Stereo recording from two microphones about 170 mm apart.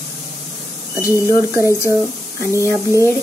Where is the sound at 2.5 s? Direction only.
15° left (ahead or behind).